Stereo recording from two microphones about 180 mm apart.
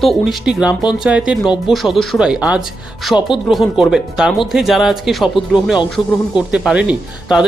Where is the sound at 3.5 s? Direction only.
Centre (ahead or behind).